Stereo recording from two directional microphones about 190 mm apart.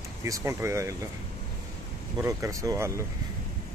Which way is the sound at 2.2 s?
15° right (ahead or behind).